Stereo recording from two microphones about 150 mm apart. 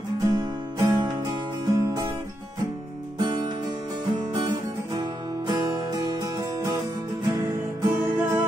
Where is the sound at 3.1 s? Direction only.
30° right (ahead or behind).